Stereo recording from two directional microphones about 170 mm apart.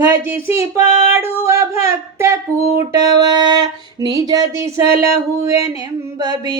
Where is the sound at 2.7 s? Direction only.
25° right (ahead or behind).